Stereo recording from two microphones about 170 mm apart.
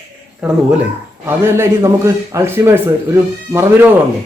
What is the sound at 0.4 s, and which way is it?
Speech, 5° right (ahead or behind).